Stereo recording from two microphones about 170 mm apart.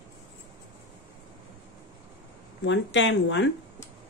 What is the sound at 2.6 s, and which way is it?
Speech, 90° left.